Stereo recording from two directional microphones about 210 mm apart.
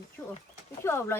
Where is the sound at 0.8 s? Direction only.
10° left (ahead or behind).